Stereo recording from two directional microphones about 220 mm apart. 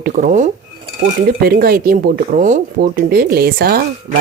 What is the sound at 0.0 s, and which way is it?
Speech, 35° right (ahead or behind).